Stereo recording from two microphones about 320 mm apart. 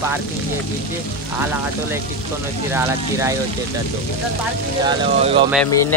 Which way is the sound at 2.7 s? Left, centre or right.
Centre.